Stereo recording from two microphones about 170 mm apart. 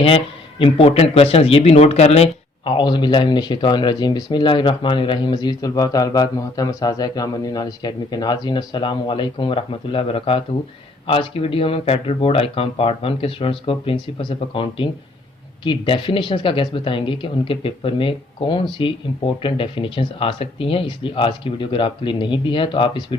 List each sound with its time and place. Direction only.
0.6 s speech: 35° left (ahead or behind)